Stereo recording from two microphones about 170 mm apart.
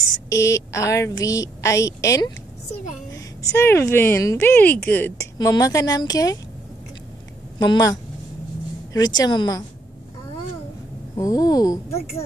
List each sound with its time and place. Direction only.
0.3 s a woman's voice: 20° left (ahead or behind)
7.5 s a woman's voice: 25° left (ahead or behind)
11.1 s a woman's voice: 20° left (ahead or behind)